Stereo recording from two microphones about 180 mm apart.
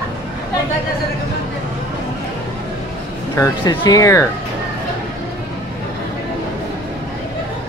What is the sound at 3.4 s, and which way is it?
Speech, 20° left (ahead or behind).